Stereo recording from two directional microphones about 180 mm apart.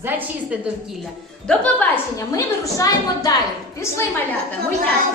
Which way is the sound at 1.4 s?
5° left (ahead or behind).